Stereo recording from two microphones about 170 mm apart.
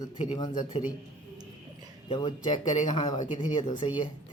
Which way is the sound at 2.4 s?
45° left (ahead or behind).